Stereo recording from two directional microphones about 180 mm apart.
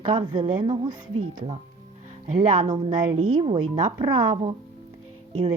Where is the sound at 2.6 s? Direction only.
30° right (ahead or behind).